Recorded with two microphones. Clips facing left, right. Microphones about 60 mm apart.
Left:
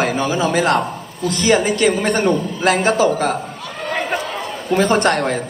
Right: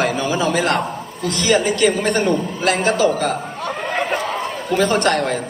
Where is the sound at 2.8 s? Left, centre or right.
Left.